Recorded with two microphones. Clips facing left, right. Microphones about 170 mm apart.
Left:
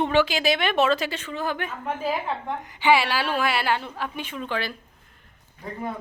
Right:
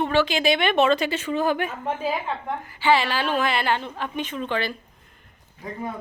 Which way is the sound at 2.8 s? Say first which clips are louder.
Even; 10° left (ahead or behind).